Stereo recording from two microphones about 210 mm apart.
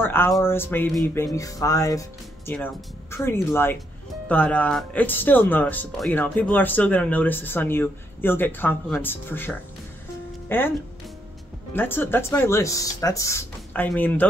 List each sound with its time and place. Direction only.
0.4 s speech: 10° left (ahead or behind)
11.7 s speech: 10° left (ahead or behind)